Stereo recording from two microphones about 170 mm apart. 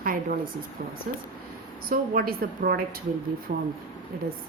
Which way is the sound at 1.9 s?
60° right (ahead or behind).